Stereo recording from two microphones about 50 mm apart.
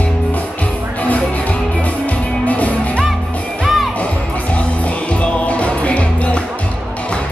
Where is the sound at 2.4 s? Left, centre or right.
Left.